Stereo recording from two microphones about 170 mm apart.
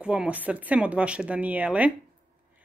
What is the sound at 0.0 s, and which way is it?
Speech, 5° right (ahead or behind).